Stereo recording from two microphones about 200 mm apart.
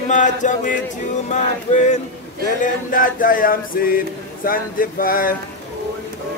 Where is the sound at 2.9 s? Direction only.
45° left (ahead or behind).